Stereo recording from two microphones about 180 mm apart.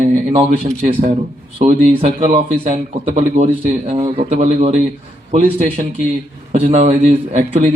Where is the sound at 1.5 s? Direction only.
35° right (ahead or behind).